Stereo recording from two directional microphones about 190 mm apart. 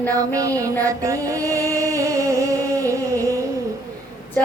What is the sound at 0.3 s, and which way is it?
Music, 15° right (ahead or behind).